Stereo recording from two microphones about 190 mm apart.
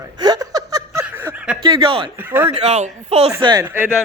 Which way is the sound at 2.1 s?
10° right (ahead or behind).